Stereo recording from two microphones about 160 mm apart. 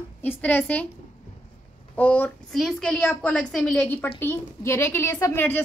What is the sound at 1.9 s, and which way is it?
A woman's voice, 10° left (ahead or behind).